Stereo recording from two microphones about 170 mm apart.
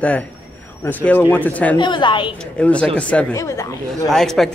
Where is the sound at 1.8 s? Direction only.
25° left (ahead or behind).